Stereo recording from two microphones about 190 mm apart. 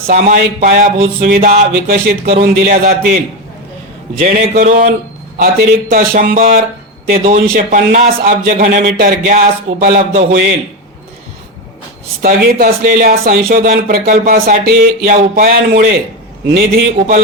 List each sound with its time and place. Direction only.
0.1 s speech: 45° right (ahead or behind)
4.5 s speech: 45° right (ahead or behind)
12.2 s speech: 50° right (ahead or behind)